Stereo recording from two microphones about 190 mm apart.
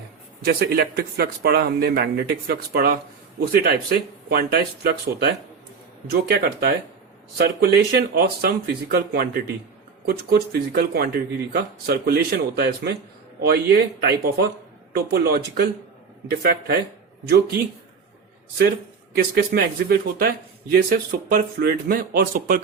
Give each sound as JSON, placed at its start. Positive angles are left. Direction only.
{"t": 0.4, "sound": "a man's voice", "side_deg": -55}
{"t": 19.1, "sound": "a man's voice", "side_deg": -55}